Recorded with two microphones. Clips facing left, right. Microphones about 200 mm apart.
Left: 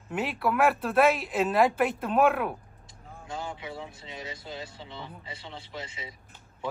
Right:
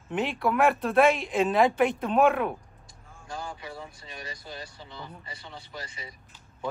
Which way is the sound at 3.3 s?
20° left (ahead or behind).